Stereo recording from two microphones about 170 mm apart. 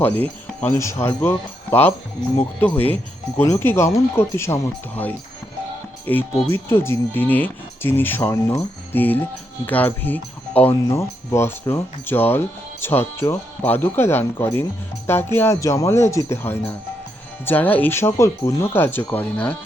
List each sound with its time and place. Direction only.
0.0 s speech: 10° left (ahead or behind)